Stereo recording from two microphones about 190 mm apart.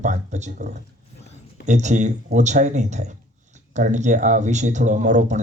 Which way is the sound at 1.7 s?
40° right (ahead or behind).